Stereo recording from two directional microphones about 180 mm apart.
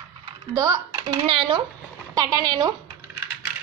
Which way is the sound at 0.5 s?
20° right (ahead or behind).